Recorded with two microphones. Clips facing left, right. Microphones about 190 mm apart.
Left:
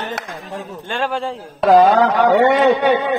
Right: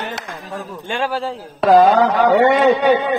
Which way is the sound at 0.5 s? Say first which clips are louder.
Right 2 dB; 25° left (ahead or behind).